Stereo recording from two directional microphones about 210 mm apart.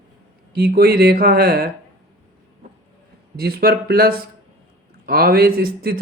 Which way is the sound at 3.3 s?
45° right (ahead or behind).